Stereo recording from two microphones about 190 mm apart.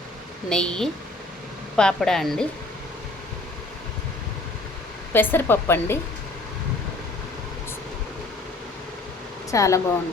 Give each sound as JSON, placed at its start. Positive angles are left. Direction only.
{"t": 0.5, "sound": "a woman's voice", "side_deg": 5}
{"t": 5.1, "sound": "speech", "side_deg": 10}
{"t": 9.5, "sound": "speech", "side_deg": 15}